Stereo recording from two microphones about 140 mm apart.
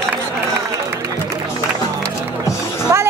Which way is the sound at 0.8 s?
25° right (ahead or behind).